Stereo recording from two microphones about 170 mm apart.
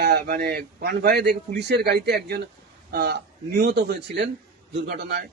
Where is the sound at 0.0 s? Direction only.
70° right (ahead or behind); by 4.3 s 85° right.